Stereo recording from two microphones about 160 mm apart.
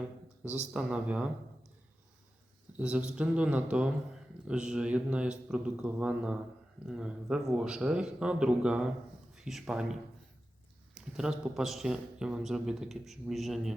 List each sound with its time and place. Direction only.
0.7 s speech: 5° right (ahead or behind)
2.7 s a man's voice: 5° right (ahead or behind)